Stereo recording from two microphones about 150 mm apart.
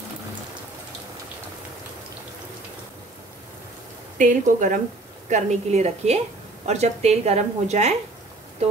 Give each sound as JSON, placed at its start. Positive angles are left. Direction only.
{"t": 4.2, "sound": "a woman's voice", "side_deg": -60}